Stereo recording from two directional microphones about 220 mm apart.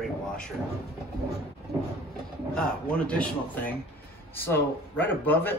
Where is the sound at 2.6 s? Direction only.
5° left (ahead or behind).